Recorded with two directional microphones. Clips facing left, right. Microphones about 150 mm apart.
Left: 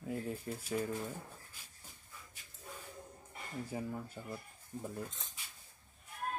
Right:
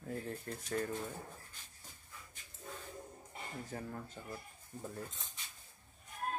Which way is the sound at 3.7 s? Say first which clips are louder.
Left 5 dB; 10° left (ahead or behind).